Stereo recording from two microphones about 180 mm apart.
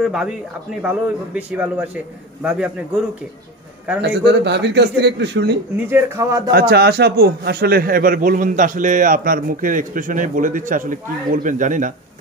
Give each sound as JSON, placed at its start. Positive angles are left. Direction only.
{"t": 0.0, "sound": "a man's voice", "side_deg": -5}
{"t": 4.0, "sound": "a man's voice", "side_deg": -70}
{"t": 5.9, "sound": "a man's voice", "side_deg": -15}
{"t": 6.7, "sound": "a man's voice", "side_deg": -60}